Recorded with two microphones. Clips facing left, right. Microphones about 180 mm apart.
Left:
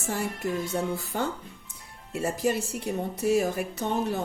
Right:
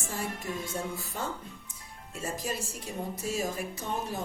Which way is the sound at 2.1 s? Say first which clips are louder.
Left 8 dB; 60° left (ahead or behind).